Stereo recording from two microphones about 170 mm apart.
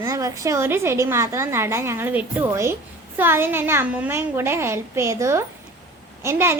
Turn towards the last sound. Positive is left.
turn(degrees=-15)  # may be behind; listen again after turning